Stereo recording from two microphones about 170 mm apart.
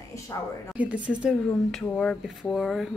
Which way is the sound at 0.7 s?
5° right (ahead or behind).